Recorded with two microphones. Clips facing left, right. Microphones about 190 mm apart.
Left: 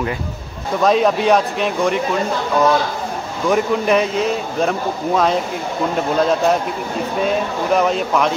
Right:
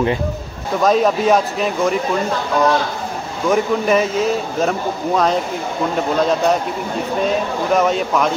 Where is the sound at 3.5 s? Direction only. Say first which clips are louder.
Even; centre (ahead or behind).